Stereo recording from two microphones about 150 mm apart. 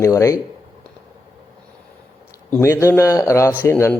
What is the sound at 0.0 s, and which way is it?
Speech, 20° left (ahead or behind).